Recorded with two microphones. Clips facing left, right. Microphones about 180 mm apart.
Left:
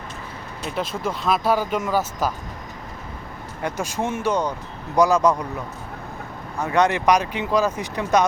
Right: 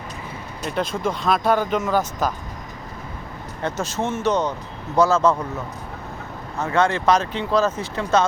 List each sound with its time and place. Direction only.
0.8 s speech: 5° left (ahead or behind)
3.6 s speech: 15° left (ahead or behind)
6.6 s speech: 20° left (ahead or behind)